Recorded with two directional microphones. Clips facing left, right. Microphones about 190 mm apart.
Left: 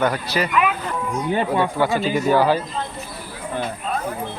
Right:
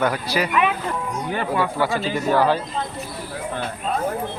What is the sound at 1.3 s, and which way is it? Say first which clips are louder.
Speech: left 3 dB; 20° left (ahead or behind).